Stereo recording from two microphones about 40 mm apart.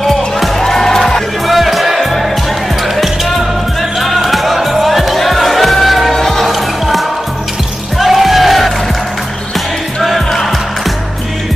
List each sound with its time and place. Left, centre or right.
0.0 s music: centre
1.5 s music: centre
4.0 s music: centre
10.0 s music: centre